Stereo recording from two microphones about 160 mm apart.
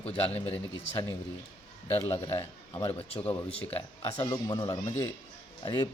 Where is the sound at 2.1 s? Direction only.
35° left (ahead or behind).